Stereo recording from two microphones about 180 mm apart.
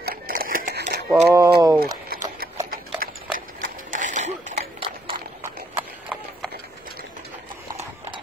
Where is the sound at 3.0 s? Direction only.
55° right (ahead or behind); by 5.2 s 35° right (ahead or behind).